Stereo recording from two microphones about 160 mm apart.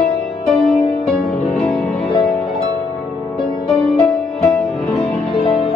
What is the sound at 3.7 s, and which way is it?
Music, centre (ahead or behind).